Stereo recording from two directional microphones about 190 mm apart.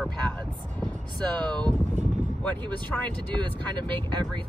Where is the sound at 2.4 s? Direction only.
5° left (ahead or behind).